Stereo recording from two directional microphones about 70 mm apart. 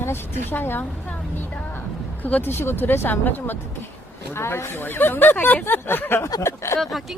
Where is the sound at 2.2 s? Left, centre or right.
Left.